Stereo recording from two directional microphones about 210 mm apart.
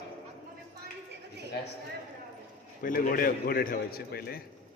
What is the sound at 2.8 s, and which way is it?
A man's voice, 40° left (ahead or behind).